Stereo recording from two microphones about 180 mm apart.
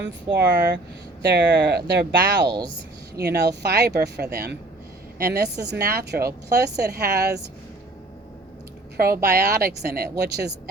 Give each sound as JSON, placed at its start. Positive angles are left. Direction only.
{"t": 0.0, "sound": "speech", "side_deg": -75}
{"t": 2.4, "sound": "speech", "side_deg": -25}
{"t": 3.2, "sound": "a woman's voice", "side_deg": -65}
{"t": 9.0, "sound": "a woman's voice", "side_deg": -55}